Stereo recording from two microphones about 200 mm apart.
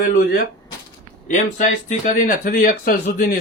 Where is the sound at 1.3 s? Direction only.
35° left (ahead or behind).